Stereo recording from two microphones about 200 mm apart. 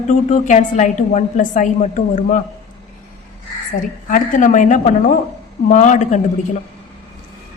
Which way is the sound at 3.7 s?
40° left (ahead or behind).